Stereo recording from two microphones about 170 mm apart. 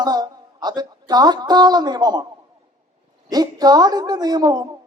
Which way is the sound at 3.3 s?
25° right (ahead or behind).